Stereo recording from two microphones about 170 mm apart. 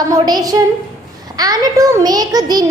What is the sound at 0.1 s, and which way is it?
A child's voice, 20° right (ahead or behind).